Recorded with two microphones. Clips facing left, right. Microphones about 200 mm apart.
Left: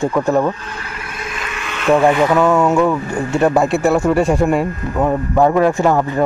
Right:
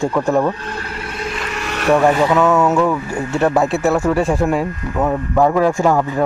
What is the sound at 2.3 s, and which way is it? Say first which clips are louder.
Speech: left 1 dB; 10° left (ahead or behind).